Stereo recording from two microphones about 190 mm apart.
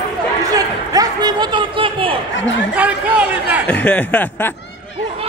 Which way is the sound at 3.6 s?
5° left (ahead or behind).